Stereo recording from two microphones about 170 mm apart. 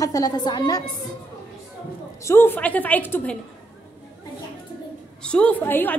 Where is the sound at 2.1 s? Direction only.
15° left (ahead or behind).